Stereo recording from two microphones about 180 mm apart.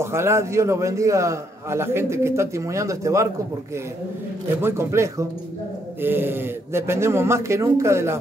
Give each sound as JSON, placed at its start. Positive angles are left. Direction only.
{"t": 0.0, "sound": "a man's voice", "side_deg": -15}
{"t": 4.6, "sound": "a man's voice", "side_deg": -15}